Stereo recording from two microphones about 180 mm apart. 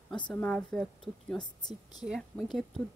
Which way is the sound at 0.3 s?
5° left (ahead or behind).